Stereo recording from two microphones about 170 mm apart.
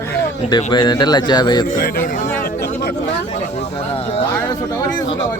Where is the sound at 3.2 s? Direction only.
40° left (ahead or behind).